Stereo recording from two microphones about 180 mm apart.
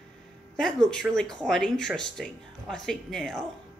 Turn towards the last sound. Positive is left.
turn(degrees=5)  # may be behind; listen again after turning